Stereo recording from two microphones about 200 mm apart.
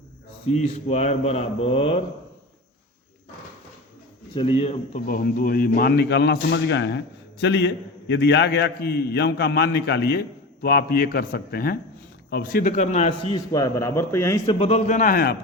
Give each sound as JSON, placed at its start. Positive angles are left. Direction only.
{"t": 0.5, "sound": "a man's voice", "side_deg": 30}
{"t": 4.4, "sound": "a man's voice", "side_deg": 25}
{"t": 5.0, "sound": "a man's voice", "side_deg": 45}
{"t": 14.6, "sound": "a man's voice", "side_deg": 35}